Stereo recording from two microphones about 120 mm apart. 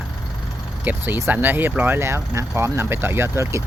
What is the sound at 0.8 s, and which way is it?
Speech, 15° right (ahead or behind).